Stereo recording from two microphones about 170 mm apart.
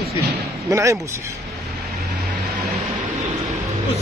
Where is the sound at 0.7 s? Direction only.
20° right (ahead or behind).